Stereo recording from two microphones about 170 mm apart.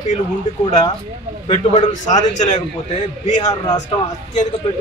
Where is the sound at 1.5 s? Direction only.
35° left (ahead or behind).